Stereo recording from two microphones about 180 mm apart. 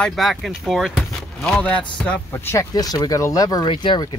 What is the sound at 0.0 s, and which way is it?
Speech, centre (ahead or behind).